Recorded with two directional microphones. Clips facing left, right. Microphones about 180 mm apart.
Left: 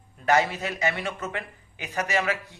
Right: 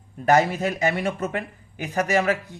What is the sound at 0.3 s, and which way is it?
Speech, 45° right (ahead or behind).